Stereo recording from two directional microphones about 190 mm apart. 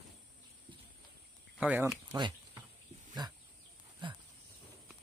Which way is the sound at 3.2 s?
20° right (ahead or behind).